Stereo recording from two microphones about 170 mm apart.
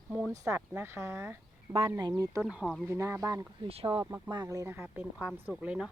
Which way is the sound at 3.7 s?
30° right (ahead or behind).